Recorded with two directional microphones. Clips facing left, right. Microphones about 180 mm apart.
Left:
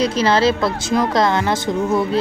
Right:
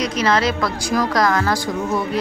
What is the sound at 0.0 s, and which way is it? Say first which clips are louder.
Speech: left 3 dB; 30° left (ahead or behind).